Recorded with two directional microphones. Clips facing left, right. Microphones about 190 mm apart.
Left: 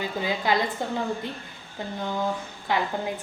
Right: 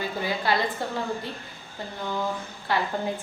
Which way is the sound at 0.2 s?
15° left (ahead or behind).